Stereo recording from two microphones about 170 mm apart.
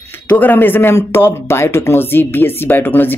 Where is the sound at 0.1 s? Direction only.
10° left (ahead or behind).